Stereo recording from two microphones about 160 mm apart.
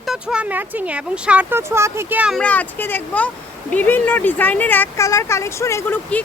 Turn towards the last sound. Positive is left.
turn(degrees=20)  # may be behind; listen again after turning